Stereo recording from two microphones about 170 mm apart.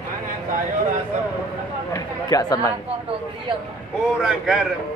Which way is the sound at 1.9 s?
20° left (ahead or behind).